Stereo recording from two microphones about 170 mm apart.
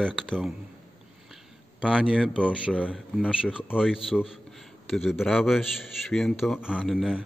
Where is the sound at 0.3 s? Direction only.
Centre (ahead or behind).